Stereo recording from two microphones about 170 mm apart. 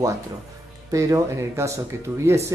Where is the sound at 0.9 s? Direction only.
20° right (ahead or behind).